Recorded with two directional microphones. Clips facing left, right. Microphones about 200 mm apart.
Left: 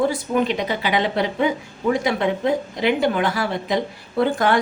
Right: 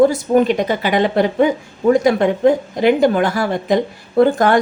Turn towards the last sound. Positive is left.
turn(degrees=-45)  # may be behind; listen again after turning